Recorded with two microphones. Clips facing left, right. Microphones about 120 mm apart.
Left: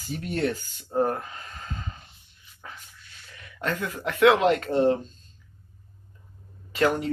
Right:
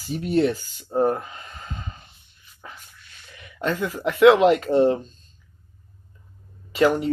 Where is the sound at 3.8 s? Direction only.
Centre (ahead or behind).